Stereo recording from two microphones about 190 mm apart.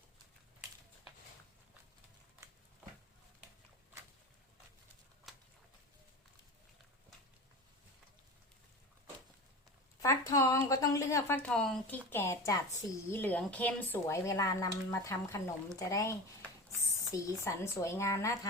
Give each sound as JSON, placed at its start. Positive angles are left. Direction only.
{"t": 5.3, "sound": "a sound", "side_deg": 0}
{"t": 10.0, "sound": "a woman's voice", "side_deg": 15}
{"t": 12.1, "sound": "a woman's voice", "side_deg": 15}